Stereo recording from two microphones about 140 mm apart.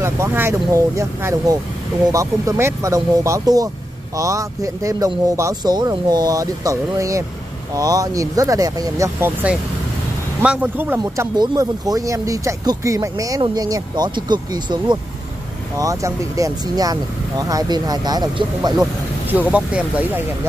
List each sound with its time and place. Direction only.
0.0 s speech: 15° right (ahead or behind)
10.4 s speech: 10° right (ahead or behind)
11.3 s speech: 30° right (ahead or behind)
19.5 s speech: 10° right (ahead or behind)